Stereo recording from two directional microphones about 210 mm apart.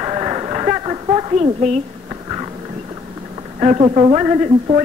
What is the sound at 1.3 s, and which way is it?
Speech, 35° right (ahead or behind).